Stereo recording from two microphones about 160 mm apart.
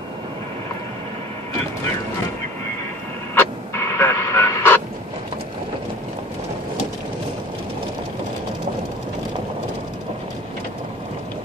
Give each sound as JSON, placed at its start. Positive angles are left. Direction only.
{"t": 3.3, "sound": "radio", "side_deg": 15}